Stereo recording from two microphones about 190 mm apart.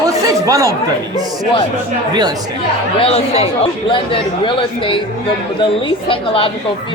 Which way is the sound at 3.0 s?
30° left (ahead or behind).